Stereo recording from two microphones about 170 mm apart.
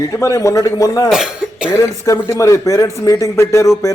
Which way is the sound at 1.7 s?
20° left (ahead or behind).